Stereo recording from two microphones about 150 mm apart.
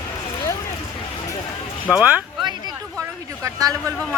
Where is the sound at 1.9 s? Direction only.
10° right (ahead or behind).